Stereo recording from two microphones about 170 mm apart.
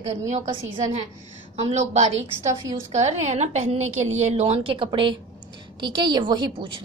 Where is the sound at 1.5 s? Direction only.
40° right (ahead or behind).